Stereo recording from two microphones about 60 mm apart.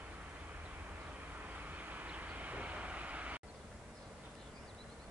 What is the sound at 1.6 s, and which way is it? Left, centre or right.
Vehicle, right.